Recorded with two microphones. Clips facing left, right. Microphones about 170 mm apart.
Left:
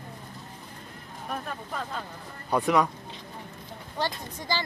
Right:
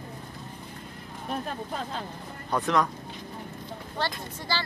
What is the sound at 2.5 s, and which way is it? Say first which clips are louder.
Speech: left 2 dB; 10° left (ahead or behind).